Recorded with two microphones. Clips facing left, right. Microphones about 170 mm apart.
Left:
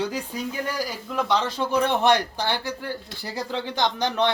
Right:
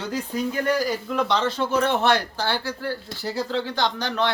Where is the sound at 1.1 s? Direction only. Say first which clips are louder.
Left 1 dB; 10° left (ahead or behind).